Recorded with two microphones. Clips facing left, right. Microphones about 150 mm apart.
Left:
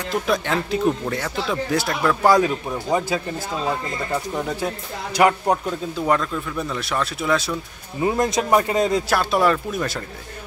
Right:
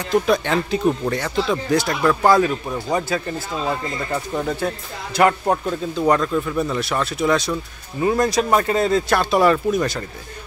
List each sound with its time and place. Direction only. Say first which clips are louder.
0.1 s speech: right 4 dB; centre (ahead or behind)
2.3 s speech: right 1 dB; 15° left (ahead or behind)
5.7 s speech: right 3 dB; centre (ahead or behind)
8.0 s speech: right 2 dB; 20° left (ahead or behind)
9.1 s speech: right 4 dB; centre (ahead or behind)